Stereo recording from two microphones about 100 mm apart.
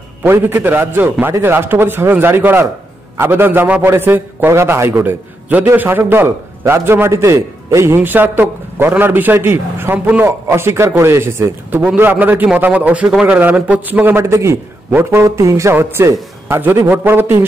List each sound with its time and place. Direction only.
0.2 s a man's voice: 20° right (ahead or behind)